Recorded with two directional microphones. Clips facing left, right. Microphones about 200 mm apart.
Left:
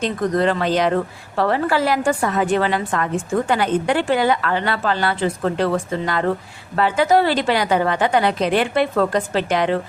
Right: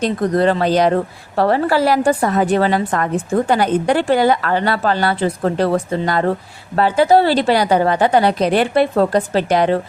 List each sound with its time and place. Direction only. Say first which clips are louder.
0.0 s a woman's voice: right 3 dB; 35° right (ahead or behind)